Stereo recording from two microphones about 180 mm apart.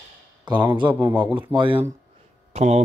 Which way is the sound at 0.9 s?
10° right (ahead or behind).